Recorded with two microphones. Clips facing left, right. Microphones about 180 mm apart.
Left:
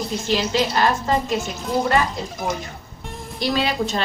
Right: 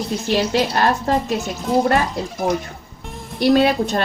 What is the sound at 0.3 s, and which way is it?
Speech, 60° right (ahead or behind).